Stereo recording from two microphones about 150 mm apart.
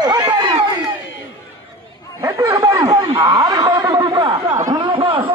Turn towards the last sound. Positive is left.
turn(degrees=-35)  # may be behind; listen again after turning